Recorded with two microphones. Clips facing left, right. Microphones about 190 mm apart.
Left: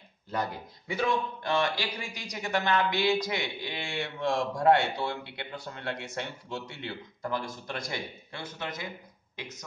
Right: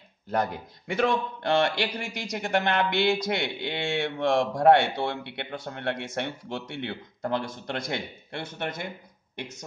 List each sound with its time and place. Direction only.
0.8 s a man's voice: 75° right (ahead or behind)